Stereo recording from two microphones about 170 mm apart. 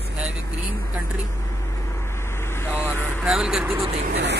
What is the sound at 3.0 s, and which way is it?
Speech, centre (ahead or behind).